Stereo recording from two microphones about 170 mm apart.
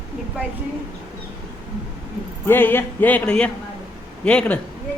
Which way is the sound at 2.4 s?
10° left (ahead or behind).